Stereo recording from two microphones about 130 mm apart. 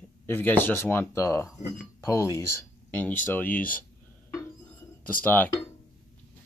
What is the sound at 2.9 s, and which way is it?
Speech, 10° left (ahead or behind).